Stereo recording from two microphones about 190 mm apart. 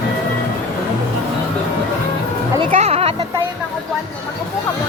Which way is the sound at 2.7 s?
35° right (ahead or behind).